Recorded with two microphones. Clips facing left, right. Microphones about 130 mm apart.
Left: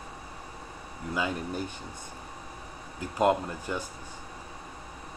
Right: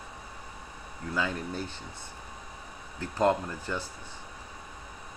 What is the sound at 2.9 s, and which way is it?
Speech, 15° left (ahead or behind).